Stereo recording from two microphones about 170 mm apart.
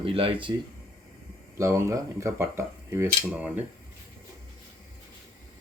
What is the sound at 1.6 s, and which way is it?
Speech, 20° right (ahead or behind).